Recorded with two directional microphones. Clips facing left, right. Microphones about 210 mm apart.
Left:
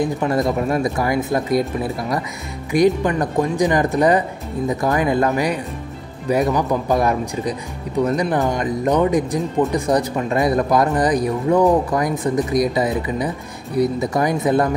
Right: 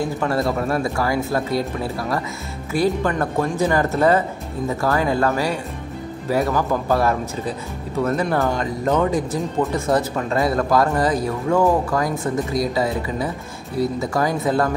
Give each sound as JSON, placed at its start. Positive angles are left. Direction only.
{"t": 0.0, "sound": "speech", "side_deg": 20}